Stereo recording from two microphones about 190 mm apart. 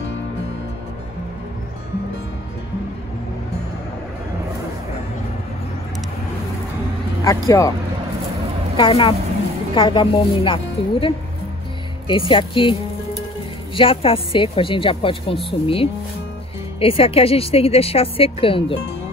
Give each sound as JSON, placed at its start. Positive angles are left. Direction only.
{"t": 7.2, "sound": "speech", "side_deg": 15}
{"t": 8.7, "sound": "speech", "side_deg": 25}
{"t": 13.7, "sound": "a woman's voice", "side_deg": 30}